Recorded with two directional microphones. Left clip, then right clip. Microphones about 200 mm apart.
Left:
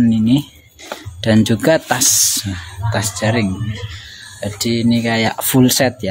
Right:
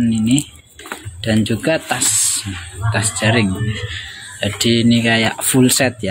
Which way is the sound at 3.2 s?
5° left (ahead or behind).